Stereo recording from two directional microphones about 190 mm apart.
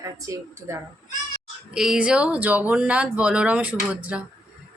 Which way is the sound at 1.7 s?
5° right (ahead or behind).